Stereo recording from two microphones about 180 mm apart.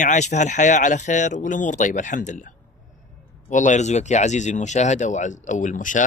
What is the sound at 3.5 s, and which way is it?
Speech, 40° left (ahead or behind).